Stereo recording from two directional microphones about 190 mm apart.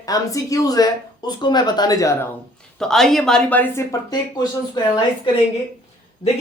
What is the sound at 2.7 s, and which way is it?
Speech, centre (ahead or behind).